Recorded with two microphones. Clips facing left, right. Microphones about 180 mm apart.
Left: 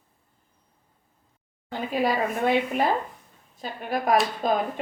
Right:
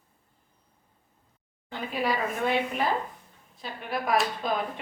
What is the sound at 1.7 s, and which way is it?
Speech, 40° left (ahead or behind).